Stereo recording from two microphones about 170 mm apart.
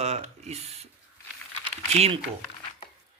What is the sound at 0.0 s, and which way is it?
Speech, 40° right (ahead or behind).